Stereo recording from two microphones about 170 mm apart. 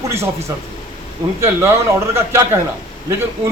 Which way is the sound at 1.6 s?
15° right (ahead or behind).